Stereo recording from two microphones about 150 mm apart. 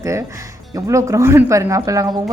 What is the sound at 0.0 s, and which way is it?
A woman's voice, 20° right (ahead or behind).